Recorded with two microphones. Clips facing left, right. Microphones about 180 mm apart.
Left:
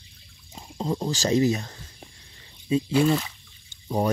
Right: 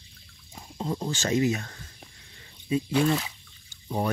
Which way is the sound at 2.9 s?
5° left (ahead or behind).